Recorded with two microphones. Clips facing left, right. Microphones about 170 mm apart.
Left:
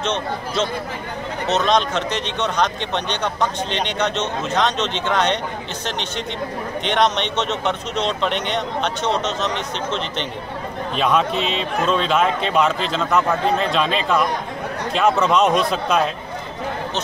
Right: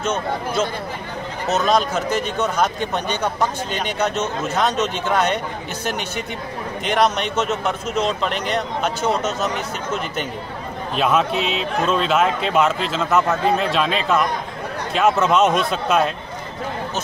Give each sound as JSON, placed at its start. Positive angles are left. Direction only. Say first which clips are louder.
{"t": 0.0, "sound": "speech", "louder": "right 1 dB", "side_deg": -5}
{"t": 11.0, "sound": "speech", "louder": "even", "side_deg": 0}